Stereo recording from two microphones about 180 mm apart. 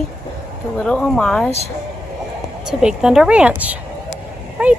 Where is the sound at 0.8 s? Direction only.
5° left (ahead or behind).